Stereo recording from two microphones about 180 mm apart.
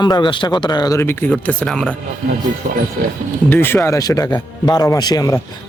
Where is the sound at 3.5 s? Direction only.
10° left (ahead or behind).